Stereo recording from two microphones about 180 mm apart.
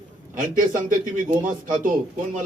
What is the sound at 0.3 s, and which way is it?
Speech, 50° right (ahead or behind).